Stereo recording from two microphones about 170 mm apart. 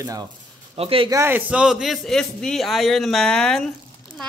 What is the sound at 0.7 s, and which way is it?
Speech, 35° right (ahead or behind).